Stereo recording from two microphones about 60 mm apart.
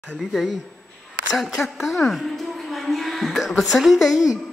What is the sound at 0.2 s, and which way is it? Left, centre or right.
A woman's voice, centre.